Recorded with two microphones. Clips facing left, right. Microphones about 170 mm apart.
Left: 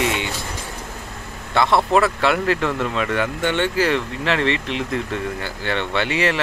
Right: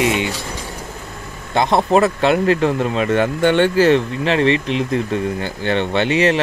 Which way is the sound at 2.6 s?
35° right (ahead or behind).